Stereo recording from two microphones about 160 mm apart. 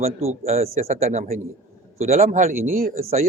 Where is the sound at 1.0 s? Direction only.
55° right (ahead or behind).